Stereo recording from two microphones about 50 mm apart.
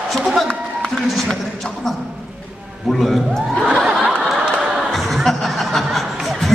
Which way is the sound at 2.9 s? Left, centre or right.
Centre.